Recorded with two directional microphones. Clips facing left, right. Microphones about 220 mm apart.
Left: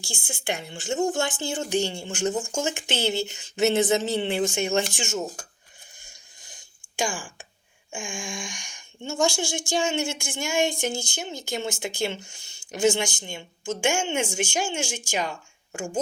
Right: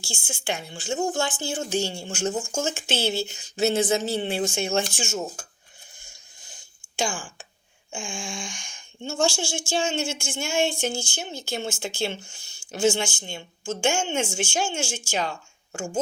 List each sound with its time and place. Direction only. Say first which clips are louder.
0.0 s speech: even; 20° left (ahead or behind)
6.9 s speech: even; 15° left (ahead or behind)